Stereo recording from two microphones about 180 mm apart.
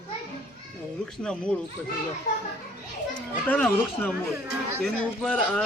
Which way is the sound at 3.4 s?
10° left (ahead or behind).